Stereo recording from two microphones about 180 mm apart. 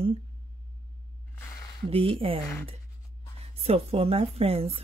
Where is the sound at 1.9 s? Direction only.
30° right (ahead or behind).